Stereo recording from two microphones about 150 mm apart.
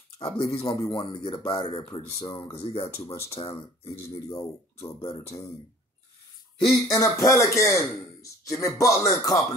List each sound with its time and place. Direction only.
0.2 s speech: 40° left (ahead or behind)
1.7 s speech: 40° left (ahead or behind)
3.9 s speech: 20° left (ahead or behind)
6.7 s speech: 20° left (ahead or behind)